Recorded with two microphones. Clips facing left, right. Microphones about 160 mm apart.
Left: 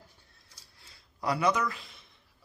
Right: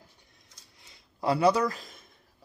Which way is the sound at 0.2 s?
20° right (ahead or behind).